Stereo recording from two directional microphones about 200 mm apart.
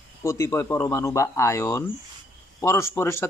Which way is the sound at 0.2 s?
15° left (ahead or behind).